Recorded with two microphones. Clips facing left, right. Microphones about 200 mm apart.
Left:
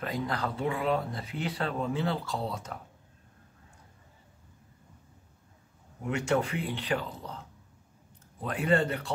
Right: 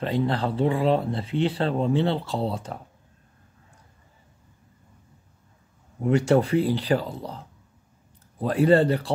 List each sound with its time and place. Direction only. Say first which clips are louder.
0.0 s speech: right 7 dB; 30° right (ahead or behind)
6.0 s speech: right 8 dB; 35° right (ahead or behind)